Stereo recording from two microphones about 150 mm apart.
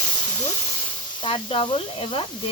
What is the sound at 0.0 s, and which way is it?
Speech, 30° left (ahead or behind).